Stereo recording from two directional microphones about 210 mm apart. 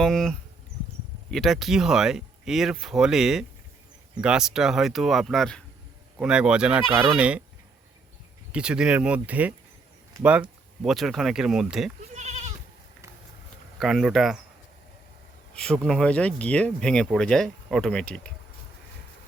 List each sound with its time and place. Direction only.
0.0 s speech: centre (ahead or behind)
8.5 s speech: 5° right (ahead or behind)
10.8 s speech: centre (ahead or behind)
12.1 s goat: 35° right (ahead or behind)
13.7 s speech: centre (ahead or behind)
15.5 s speech: 5° left (ahead or behind)